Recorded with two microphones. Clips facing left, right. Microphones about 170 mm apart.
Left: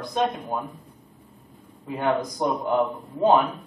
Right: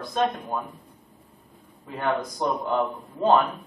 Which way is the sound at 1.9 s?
15° left (ahead or behind).